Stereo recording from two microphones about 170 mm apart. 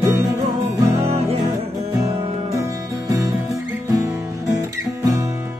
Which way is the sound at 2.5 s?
20° right (ahead or behind).